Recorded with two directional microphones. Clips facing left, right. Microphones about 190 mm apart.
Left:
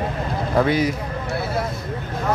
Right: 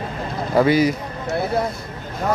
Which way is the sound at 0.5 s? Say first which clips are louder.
Right 3 dB; 5° right (ahead or behind).